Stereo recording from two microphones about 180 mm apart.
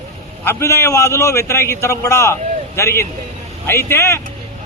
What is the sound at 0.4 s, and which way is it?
A man's voice, 15° left (ahead or behind).